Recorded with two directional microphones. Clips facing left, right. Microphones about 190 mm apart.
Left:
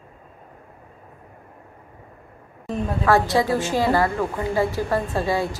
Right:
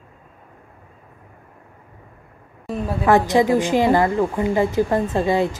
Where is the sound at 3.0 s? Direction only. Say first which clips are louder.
Right 4 dB; 20° right (ahead or behind).